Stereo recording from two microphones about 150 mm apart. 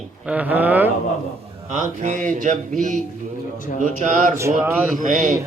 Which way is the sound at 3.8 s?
55° right (ahead or behind).